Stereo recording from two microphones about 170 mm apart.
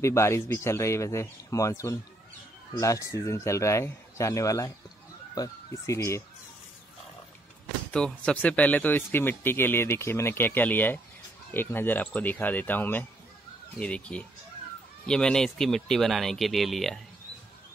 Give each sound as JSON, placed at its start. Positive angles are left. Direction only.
{"t": 0.0, "sound": "speech", "side_deg": 15}
{"t": 7.9, "sound": "speech", "side_deg": 5}